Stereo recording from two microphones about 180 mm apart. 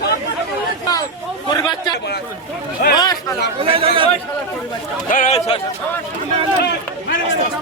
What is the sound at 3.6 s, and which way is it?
Speech, 30° right (ahead or behind).